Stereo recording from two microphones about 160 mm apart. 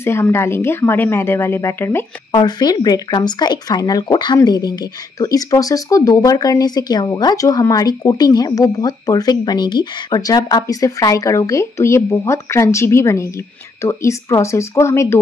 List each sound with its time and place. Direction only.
0.0 s a woman's voice: 15° left (ahead or behind)
2.4 s a woman's voice: 25° left (ahead or behind)